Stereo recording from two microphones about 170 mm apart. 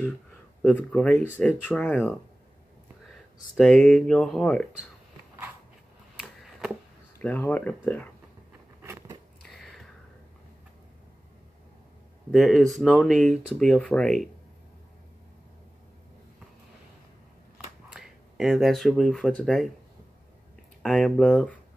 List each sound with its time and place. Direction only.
0.6 s speech: 10° left (ahead or behind)
3.5 s speech: 5° left (ahead or behind)
6.2 s a sound: centre (ahead or behind)
7.2 s speech: 10° left (ahead or behind)
8.8 s biting: 15° right (ahead or behind)
9.4 s a sound: centre (ahead or behind)
12.3 s speech: centre (ahead or behind)
17.9 s speech: centre (ahead or behind)
20.8 s speech: 5° left (ahead or behind)